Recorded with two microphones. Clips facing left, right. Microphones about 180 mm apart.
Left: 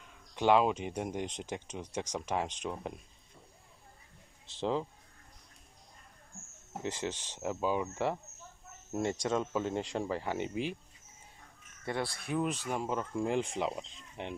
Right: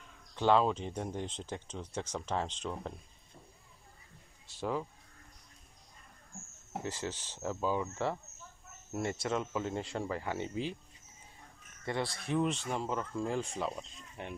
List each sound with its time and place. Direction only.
0.4 s speech: 15° left (ahead or behind)
4.5 s speech: 25° left (ahead or behind)
6.8 s speech: 20° left (ahead or behind)
11.8 s speech: 10° left (ahead or behind)